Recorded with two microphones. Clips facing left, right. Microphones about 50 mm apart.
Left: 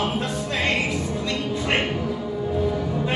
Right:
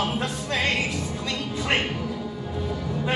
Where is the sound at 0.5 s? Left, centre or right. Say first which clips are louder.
Left 1 dB; centre.